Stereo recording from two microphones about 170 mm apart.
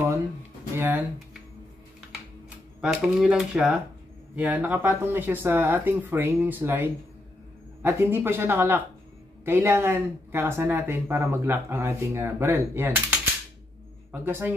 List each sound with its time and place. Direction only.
0.7 s speech: 10° right (ahead or behind)
2.8 s speech: 5° right (ahead or behind)